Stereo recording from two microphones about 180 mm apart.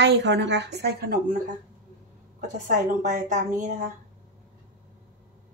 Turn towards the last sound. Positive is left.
turn(degrees=-45)  # may be behind; listen again after turning